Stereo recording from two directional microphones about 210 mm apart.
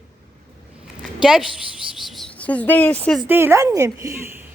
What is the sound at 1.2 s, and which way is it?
A woman's voice, 5° right (ahead or behind).